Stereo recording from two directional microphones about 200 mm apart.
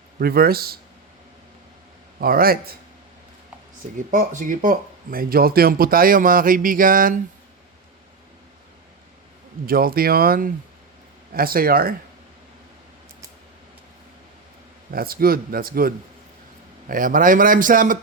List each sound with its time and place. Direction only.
0.2 s speech: 50° right (ahead or behind)
2.2 s speech: 50° right (ahead or behind)
3.9 s speech: 40° right (ahead or behind)
9.6 s speech: 45° right (ahead or behind)
14.8 s speech: 50° right (ahead or behind)
16.9 s speech: 45° right (ahead or behind)